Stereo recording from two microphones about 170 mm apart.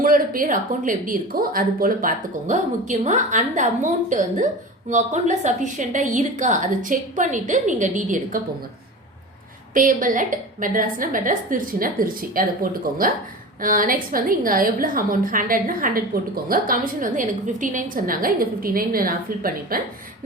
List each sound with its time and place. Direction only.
0.0 s a woman's voice: 55° right (ahead or behind)
9.7 s a woman's voice: 50° right (ahead or behind)
13.6 s a woman's voice: 55° right (ahead or behind)